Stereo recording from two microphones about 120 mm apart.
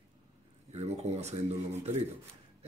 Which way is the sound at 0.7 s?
65° right (ahead or behind).